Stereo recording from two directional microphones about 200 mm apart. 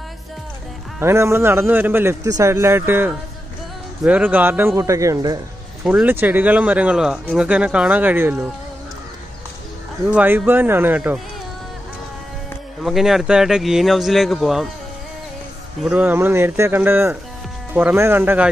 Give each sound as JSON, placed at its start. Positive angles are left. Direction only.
{"t": 0.9, "sound": "speech", "side_deg": -15}
{"t": 10.1, "sound": "speech", "side_deg": -10}
{"t": 12.8, "sound": "speech", "side_deg": 0}
{"t": 15.8, "sound": "speech", "side_deg": -5}